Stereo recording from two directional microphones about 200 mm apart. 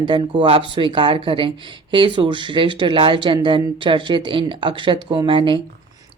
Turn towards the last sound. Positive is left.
turn(degrees=-25)  # may be behind; listen again after turning